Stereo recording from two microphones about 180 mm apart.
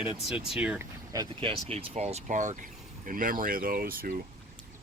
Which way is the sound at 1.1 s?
25° right (ahead or behind).